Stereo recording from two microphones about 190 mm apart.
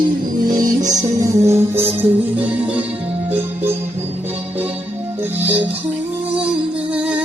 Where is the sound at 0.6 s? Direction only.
40° right (ahead or behind).